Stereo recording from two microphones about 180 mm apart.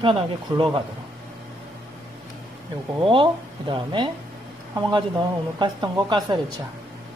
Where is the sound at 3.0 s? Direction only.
30° right (ahead or behind).